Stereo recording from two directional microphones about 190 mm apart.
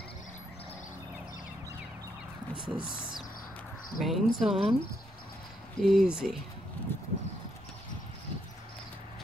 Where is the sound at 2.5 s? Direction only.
25° right (ahead or behind).